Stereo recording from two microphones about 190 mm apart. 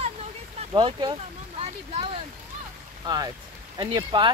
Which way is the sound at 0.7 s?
25° right (ahead or behind).